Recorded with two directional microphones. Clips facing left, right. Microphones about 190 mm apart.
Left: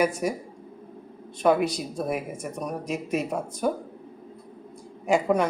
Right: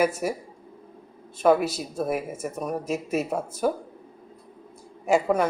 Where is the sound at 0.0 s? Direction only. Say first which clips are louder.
Even; 5° right (ahead or behind).